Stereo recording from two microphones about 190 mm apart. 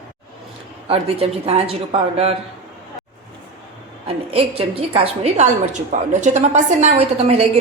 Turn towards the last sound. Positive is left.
turn(degrees=-35)  # may be behind; listen again after turning